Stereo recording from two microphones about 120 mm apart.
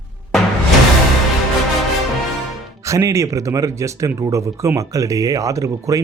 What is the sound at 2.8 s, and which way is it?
Speech, 25° right (ahead or behind).